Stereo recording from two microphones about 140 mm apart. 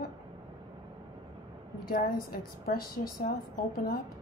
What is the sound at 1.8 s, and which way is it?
A woman's voice, 90° left.